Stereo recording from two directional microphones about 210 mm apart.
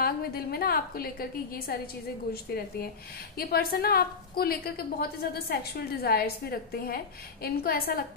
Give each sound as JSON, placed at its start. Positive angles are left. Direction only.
{"t": 0.0, "sound": "a woman's voice", "side_deg": 45}
{"t": 3.3, "sound": "a woman's voice", "side_deg": 45}